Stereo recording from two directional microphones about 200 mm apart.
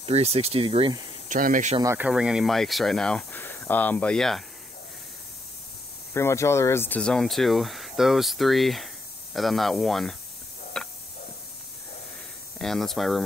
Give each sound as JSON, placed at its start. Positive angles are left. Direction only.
{"t": 0.0, "sound": "speech", "side_deg": -30}
{"t": 1.3, "sound": "speech", "side_deg": -40}
{"t": 1.8, "sound": "speech", "side_deg": -10}
{"t": 6.1, "sound": "speech", "side_deg": 15}
{"t": 10.8, "sound": "a sound", "side_deg": 5}
{"t": 12.5, "sound": "speech", "side_deg": 0}